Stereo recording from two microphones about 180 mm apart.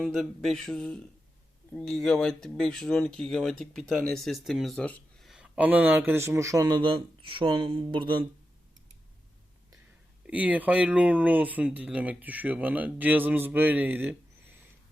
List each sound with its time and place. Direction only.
0.0 s speech: centre (ahead or behind); by 6.7 s 15° right (ahead or behind)
7.2 s speech: 30° right (ahead or behind)
10.2 s speech: 10° right (ahead or behind)